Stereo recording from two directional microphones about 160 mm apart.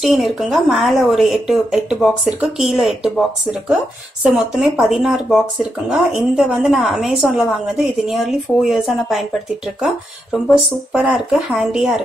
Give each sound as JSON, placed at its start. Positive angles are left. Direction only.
{"t": 0.0, "sound": "speech", "side_deg": 0}